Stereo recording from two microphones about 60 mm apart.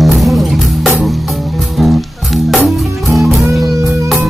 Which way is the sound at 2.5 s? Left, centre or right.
Centre.